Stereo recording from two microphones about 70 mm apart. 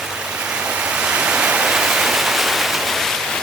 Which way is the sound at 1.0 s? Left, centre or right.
Centre.